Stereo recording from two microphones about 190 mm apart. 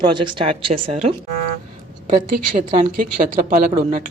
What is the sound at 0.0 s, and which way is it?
Speech, 25° right (ahead or behind).